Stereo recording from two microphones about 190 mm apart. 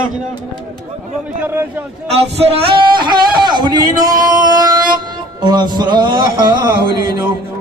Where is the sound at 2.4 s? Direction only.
30° right (ahead or behind).